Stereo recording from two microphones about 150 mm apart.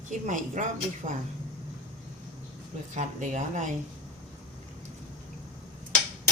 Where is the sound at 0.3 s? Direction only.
55° right (ahead or behind).